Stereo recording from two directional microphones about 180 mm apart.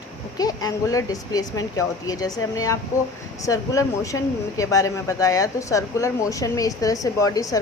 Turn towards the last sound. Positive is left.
turn(degrees=20)  # may be behind; listen again after turning